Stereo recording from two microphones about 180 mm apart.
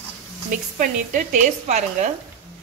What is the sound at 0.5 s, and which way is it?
Speech, 45° right (ahead or behind).